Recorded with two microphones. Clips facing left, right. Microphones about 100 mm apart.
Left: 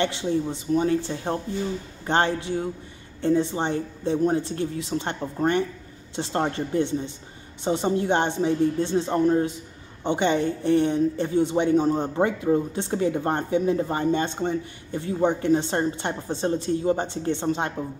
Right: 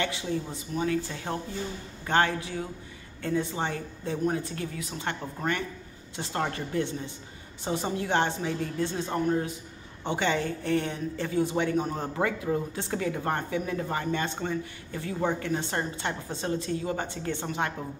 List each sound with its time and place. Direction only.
0.0 s a woman's voice: 30° left (ahead or behind)